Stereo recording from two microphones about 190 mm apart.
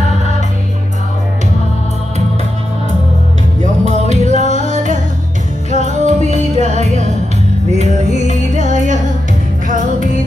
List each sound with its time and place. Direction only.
3.6 s music: 40° right (ahead or behind)